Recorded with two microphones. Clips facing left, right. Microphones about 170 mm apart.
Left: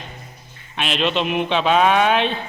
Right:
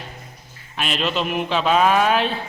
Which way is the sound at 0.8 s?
Centre (ahead or behind).